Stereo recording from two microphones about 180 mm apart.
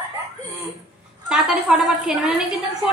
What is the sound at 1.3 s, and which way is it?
A woman's voice, centre (ahead or behind).